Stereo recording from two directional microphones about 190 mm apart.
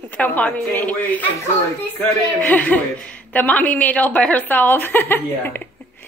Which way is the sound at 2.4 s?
10° left (ahead or behind).